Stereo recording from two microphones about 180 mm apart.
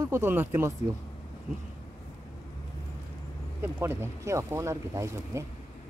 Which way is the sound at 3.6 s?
10° right (ahead or behind).